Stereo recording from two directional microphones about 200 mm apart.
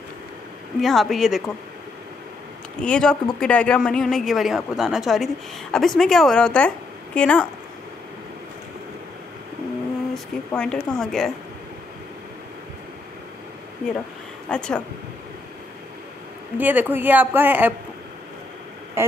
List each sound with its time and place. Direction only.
0.7 s speech: centre (ahead or behind)
2.8 s speech: 5° left (ahead or behind)
10.1 s speech: 5° left (ahead or behind)
14.5 s speech: 5° left (ahead or behind)
16.5 s speech: 10° right (ahead or behind)